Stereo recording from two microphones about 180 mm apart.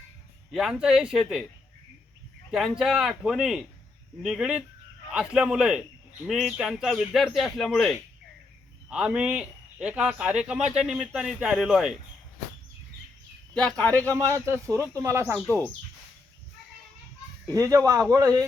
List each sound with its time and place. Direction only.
0.5 s speech: centre (ahead or behind)
2.5 s speech: centre (ahead or behind)
13.5 s speech: 5° left (ahead or behind)
14.2 s speech: 15° right (ahead or behind)
15.4 s speech: 5° left (ahead or behind)
17.5 s speech: 20° right (ahead or behind)